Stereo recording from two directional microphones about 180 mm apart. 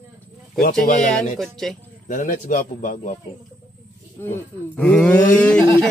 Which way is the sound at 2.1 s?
45° left (ahead or behind).